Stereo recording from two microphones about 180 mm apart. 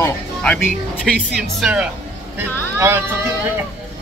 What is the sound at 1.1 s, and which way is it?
Speech, centre (ahead or behind).